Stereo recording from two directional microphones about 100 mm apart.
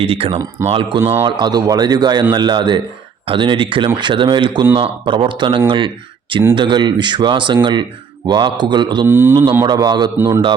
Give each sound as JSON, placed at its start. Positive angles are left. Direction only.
{"t": 0.0, "sound": "speech", "side_deg": -75}
{"t": 0.7, "sound": "speech", "side_deg": -60}
{"t": 1.2, "sound": "speech", "side_deg": -45}
{"t": 9.0, "sound": "speech", "side_deg": -20}
{"t": 9.6, "sound": "speech", "side_deg": -45}